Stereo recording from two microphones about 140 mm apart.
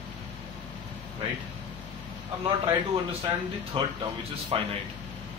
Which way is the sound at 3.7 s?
40° right (ahead or behind).